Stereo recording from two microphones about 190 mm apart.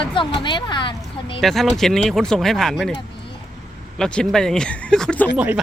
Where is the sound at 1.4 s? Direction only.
Centre (ahead or behind).